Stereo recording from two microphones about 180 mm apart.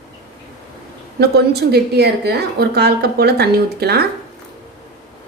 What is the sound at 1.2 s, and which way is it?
A woman's voice, 60° right (ahead or behind).